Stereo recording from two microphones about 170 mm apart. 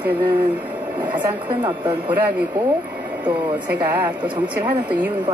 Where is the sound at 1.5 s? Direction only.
30° right (ahead or behind).